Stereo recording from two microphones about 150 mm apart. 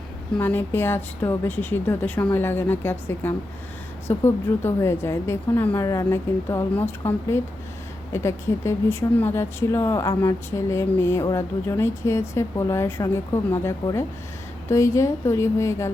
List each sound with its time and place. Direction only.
0.3 s a woman's voice: 15° left (ahead or behind)